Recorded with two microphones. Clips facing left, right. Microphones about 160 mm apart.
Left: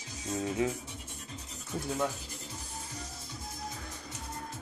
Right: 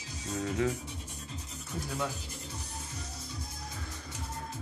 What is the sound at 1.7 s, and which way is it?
Rub, 30° left (ahead or behind).